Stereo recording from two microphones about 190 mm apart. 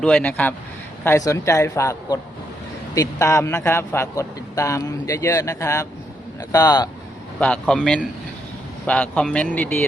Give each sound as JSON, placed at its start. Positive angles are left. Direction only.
{"t": 0.0, "sound": "a man's voice", "side_deg": 5}
{"t": 7.3, "sound": "a man's voice", "side_deg": 5}